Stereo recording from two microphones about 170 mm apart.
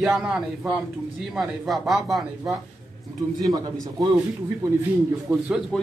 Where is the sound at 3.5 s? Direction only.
25° right (ahead or behind).